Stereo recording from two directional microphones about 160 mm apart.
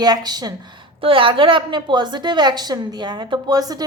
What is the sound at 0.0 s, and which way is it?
A woman's voice, 25° right (ahead or behind).